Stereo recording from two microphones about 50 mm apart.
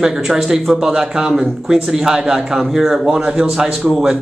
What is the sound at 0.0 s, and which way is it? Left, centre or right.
Speech, centre.